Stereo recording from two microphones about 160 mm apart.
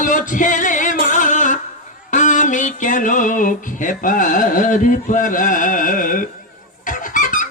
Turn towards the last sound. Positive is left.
turn(degrees=55)  # may be behind; listen again after turning